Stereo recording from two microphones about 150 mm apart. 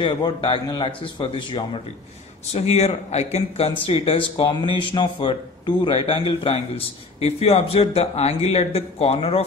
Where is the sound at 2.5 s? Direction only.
45° left (ahead or behind).